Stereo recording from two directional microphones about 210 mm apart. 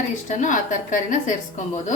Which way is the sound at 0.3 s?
35° left (ahead or behind).